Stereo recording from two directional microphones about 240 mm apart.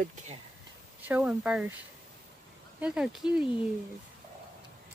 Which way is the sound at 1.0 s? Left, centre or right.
Centre.